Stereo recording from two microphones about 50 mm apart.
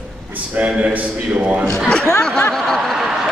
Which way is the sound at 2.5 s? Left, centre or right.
Centre.